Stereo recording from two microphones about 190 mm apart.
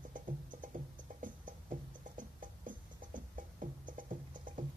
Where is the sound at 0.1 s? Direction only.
45° right (ahead or behind).